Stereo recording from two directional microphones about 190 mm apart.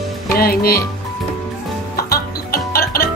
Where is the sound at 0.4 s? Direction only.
55° left (ahead or behind).